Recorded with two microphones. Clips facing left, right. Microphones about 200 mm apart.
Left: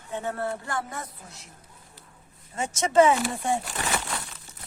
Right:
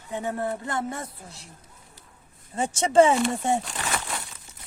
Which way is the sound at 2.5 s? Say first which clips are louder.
Right 2 dB; 30° right (ahead or behind).